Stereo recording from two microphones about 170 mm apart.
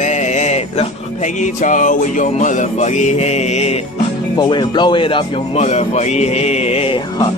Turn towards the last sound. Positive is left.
turn(degrees=35)  # may be behind; listen again after turning